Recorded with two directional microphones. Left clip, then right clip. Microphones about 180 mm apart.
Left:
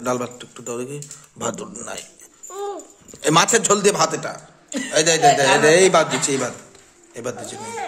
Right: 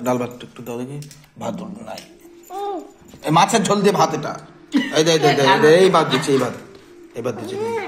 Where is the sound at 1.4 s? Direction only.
50° left (ahead or behind).